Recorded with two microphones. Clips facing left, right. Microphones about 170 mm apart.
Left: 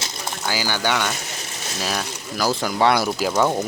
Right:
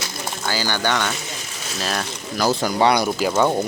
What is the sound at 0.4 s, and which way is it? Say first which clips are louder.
Speech: right 1 dB; 10° left (ahead or behind).